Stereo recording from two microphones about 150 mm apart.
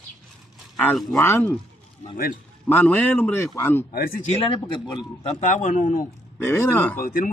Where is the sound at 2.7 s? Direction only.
10° left (ahead or behind).